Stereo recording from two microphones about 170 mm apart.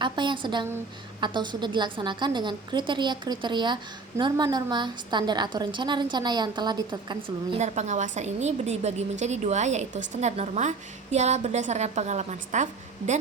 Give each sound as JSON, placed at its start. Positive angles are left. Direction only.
{"t": 0.0, "sound": "a woman's voice", "side_deg": -30}
{"t": 7.6, "sound": "a woman's voice", "side_deg": -45}